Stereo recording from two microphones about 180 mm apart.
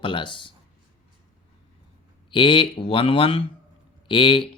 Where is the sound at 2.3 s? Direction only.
30° left (ahead or behind).